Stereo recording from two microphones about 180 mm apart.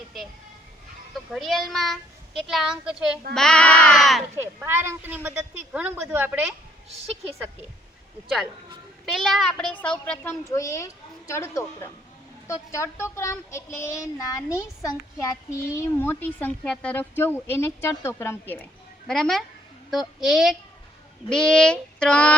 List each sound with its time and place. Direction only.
1.3 s a child's voice: centre (ahead or behind)
4.6 s a woman's voice: 15° right (ahead or behind)
9.0 s a child's voice: centre (ahead or behind)
10.4 s a child's voice: 15° left (ahead or behind)